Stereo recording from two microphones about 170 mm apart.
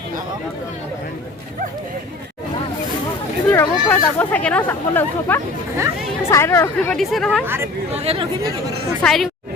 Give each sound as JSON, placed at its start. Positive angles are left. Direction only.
{"t": 3.5, "sound": "speech", "side_deg": 15}
{"t": 6.9, "sound": "speech", "side_deg": 0}
{"t": 7.4, "sound": "speech", "side_deg": -15}
{"t": 7.9, "sound": "speech", "side_deg": -35}
{"t": 9.0, "sound": "speech", "side_deg": 5}